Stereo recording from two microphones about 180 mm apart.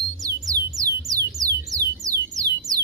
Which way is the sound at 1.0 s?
20° right (ahead or behind).